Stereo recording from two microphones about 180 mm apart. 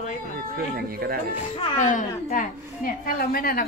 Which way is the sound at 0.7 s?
55° right (ahead or behind).